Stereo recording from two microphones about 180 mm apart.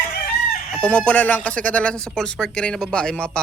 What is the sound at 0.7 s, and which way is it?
Speech, 5° left (ahead or behind).